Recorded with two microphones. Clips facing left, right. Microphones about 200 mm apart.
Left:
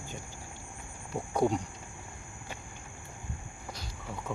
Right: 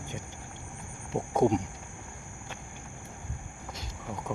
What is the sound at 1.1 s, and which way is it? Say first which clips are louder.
Speech: right 4 dB; 20° right (ahead or behind).